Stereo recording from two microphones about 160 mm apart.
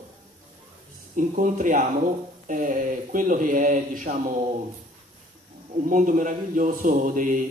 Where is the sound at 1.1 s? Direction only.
55° right (ahead or behind).